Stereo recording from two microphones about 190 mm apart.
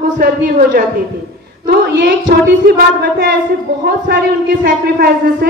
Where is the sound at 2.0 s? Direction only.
60° right (ahead or behind).